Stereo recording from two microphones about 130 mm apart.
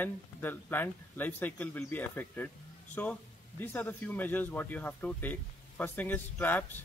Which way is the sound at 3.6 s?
10° left (ahead or behind).